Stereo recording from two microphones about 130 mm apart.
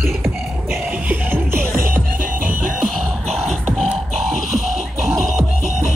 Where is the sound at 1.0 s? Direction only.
15° right (ahead or behind).